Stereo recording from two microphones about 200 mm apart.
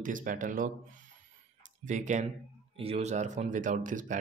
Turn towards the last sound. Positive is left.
turn(degrees=-40)  # may be behind; listen again after turning